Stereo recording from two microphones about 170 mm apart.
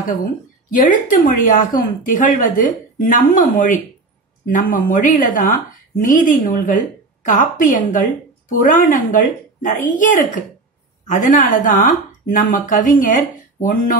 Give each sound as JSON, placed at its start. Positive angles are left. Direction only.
{"t": 0.7, "sound": "speech", "side_deg": 50}